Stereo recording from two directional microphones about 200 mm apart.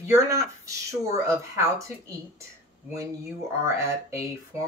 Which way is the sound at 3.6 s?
15° right (ahead or behind).